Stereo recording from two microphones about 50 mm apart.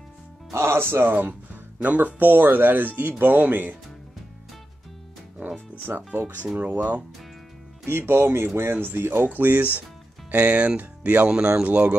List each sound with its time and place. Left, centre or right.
0.7 s speech: right
1.1 s speech: right
5.9 s speech: right
6.4 s speech: right
7.8 s speech: right